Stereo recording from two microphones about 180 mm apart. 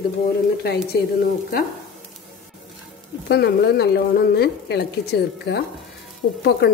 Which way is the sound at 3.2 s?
65° left (ahead or behind).